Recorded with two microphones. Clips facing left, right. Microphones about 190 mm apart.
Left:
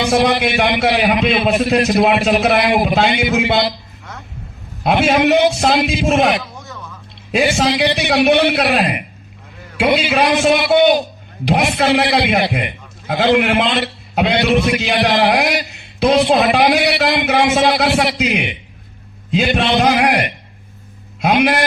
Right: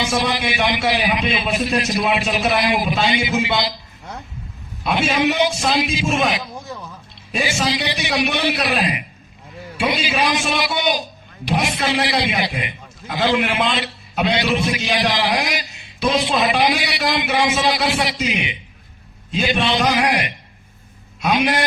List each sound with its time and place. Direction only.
0.0 s a man's voice: 65° left (ahead or behind)
4.8 s a man's voice: 65° left (ahead or behind)